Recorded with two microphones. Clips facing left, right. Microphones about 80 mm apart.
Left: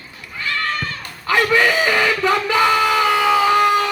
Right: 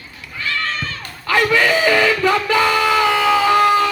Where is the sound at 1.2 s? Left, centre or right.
Left.